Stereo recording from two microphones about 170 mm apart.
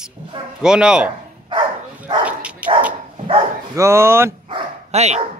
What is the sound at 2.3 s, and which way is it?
Dog, 10° right (ahead or behind).